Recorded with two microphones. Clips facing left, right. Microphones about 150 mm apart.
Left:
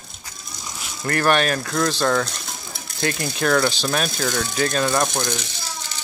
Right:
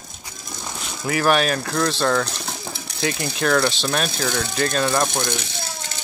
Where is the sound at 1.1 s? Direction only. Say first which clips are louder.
Even; centre (ahead or behind).